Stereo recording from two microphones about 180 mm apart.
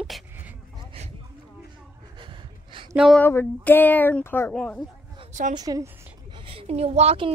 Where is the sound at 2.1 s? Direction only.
25° right (ahead or behind).